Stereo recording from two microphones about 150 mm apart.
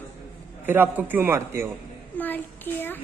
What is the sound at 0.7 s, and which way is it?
A man's voice, 15° right (ahead or behind).